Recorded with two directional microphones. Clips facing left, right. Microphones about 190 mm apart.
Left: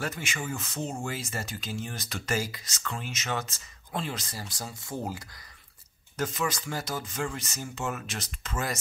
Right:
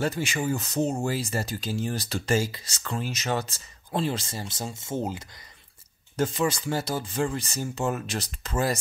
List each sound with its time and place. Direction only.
0.0 s speech: 35° right (ahead or behind)